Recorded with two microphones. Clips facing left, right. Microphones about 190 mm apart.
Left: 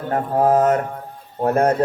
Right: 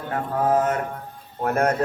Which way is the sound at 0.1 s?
40° left (ahead or behind).